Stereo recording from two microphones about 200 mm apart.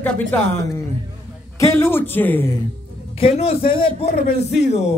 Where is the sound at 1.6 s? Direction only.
10° left (ahead or behind).